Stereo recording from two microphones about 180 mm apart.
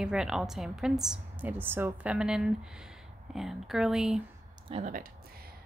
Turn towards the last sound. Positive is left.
turn(degrees=-35)  # may be behind; listen again after turning